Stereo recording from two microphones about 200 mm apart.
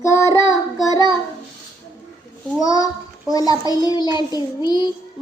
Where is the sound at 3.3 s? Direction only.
20° left (ahead or behind).